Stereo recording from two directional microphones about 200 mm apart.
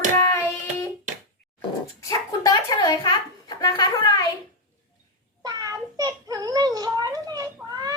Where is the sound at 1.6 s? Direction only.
15° left (ahead or behind).